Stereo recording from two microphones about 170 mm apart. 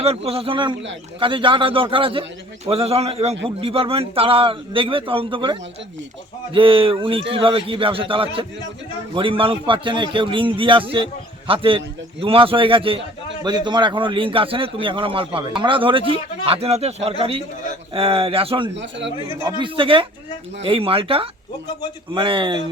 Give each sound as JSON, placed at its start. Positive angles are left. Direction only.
{"t": 0.0, "sound": "a man's voice", "side_deg": -35}
{"t": 18.8, "sound": "a man's voice", "side_deg": -90}
{"t": 19.4, "sound": "a man's voice", "side_deg": -25}